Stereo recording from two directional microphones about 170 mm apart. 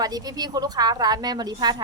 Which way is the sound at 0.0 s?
20° right (ahead or behind).